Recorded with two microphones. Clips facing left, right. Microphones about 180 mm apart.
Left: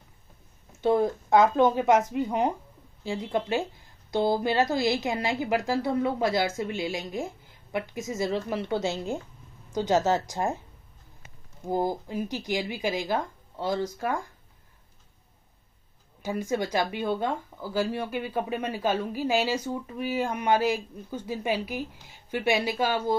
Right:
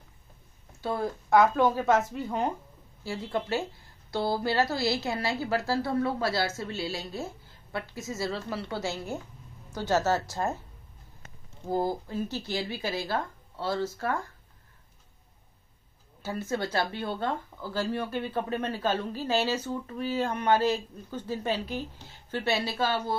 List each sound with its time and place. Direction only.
0.7 s a woman's voice: 20° left (ahead or behind)
11.6 s speech: 15° left (ahead or behind)
16.2 s speech: 15° left (ahead or behind)